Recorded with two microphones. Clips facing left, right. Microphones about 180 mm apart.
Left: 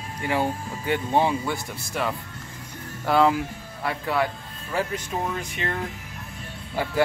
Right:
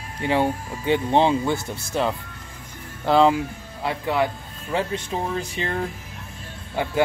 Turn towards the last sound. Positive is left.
turn(degrees=-20)  # may be behind; listen again after turning